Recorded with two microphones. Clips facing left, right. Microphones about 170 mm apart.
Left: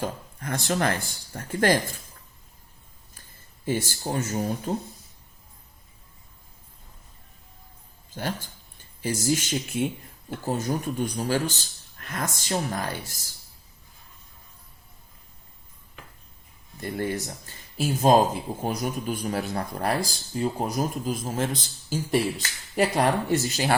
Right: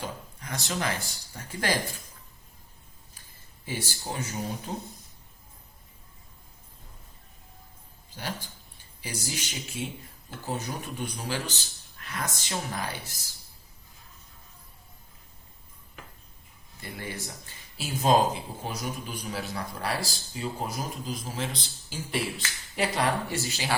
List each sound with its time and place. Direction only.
0.0 s speech: 50° left (ahead or behind)
3.7 s speech: 45° left (ahead or behind)
8.1 s speech: 50° left (ahead or behind)
16.8 s speech: 50° left (ahead or behind)